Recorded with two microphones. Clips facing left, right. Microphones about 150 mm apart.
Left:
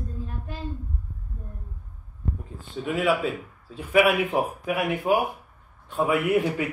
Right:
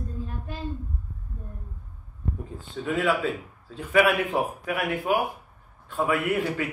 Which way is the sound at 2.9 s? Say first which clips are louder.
Left 1 dB; 15° left (ahead or behind).